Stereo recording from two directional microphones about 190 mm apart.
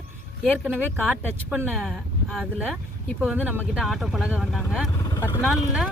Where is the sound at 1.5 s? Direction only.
Centre (ahead or behind).